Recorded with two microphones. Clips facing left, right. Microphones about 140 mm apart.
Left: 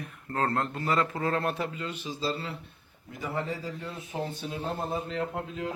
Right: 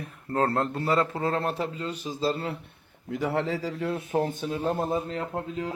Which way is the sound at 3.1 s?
80° right.